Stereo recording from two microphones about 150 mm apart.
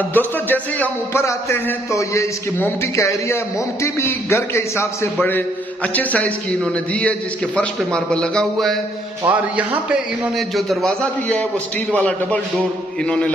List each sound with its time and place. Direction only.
0.1 s a man's voice: 10° left (ahead or behind)
9.3 s a man's voice: 10° right (ahead or behind); by 13.3 s 5° left (ahead or behind)